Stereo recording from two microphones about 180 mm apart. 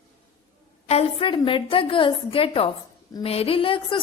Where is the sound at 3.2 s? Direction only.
35° left (ahead or behind).